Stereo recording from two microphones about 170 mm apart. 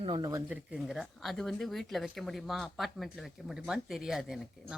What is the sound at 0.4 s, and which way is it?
Speech, 5° right (ahead or behind).